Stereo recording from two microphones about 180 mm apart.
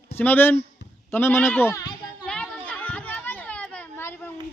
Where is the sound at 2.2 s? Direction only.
5° left (ahead or behind).